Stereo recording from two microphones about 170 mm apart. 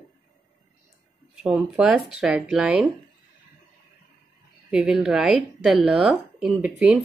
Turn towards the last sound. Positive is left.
turn(degrees=-5)  # may be behind; listen again after turning